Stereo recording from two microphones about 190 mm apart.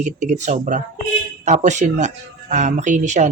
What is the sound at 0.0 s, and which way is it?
Speech, 40° right (ahead or behind).